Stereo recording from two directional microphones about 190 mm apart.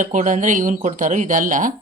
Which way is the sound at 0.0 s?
40° right (ahead or behind).